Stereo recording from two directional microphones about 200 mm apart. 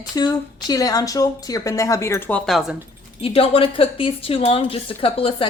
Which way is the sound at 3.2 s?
30° left (ahead or behind).